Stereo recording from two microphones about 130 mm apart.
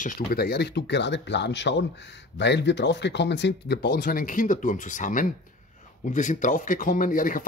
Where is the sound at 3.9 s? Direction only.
90° left.